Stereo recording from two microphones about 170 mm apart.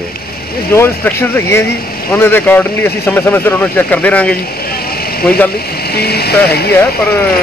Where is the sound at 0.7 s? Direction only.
15° left (ahead or behind).